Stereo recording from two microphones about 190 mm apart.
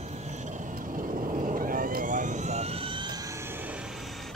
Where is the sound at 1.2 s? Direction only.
45° right (ahead or behind); by 3.2 s 25° right (ahead or behind).